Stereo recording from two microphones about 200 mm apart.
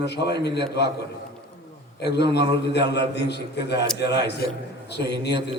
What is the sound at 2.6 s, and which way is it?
A man's voice, 60° left (ahead or behind).